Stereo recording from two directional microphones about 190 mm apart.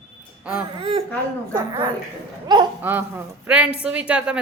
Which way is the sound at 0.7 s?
30° right (ahead or behind).